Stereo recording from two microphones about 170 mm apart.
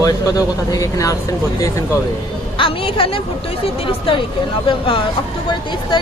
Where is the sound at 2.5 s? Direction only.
30° left (ahead or behind).